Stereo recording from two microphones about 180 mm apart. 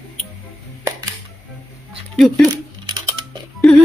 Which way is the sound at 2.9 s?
25° right (ahead or behind).